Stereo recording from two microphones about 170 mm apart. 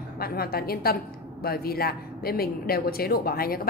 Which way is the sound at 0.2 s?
65° left (ahead or behind).